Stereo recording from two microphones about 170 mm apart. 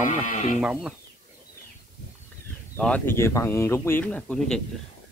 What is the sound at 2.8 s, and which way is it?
Speech, 10° left (ahead or behind).